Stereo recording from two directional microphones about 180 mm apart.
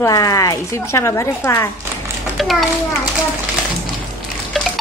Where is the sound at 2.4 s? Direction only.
Centre (ahead or behind).